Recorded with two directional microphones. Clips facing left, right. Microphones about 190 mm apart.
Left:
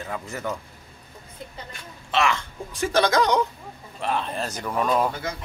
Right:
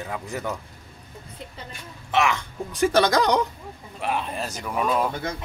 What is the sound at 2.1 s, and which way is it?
Speech, 15° right (ahead or behind).